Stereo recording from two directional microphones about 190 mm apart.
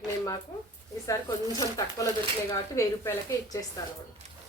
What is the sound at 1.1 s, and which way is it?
Speech, 20° left (ahead or behind).